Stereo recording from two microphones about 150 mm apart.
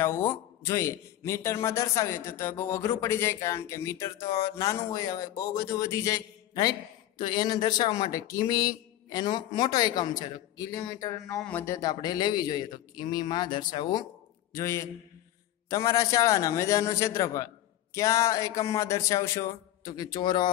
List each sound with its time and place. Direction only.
0.0 s a man's voice: 15° left (ahead or behind)
11.3 s a man's voice: 5° left (ahead or behind)
11.6 s a man's voice: 25° left (ahead or behind)
14.5 s a man's voice: 20° left (ahead or behind)